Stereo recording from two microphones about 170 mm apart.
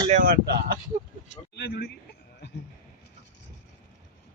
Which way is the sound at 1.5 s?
70° left (ahead or behind).